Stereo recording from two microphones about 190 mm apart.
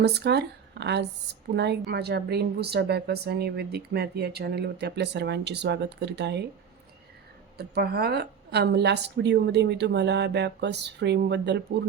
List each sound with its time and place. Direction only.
0.0 s speech: 60° right (ahead or behind)
7.6 s speech: 55° right (ahead or behind)